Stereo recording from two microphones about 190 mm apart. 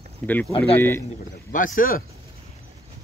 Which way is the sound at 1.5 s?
45° left (ahead or behind).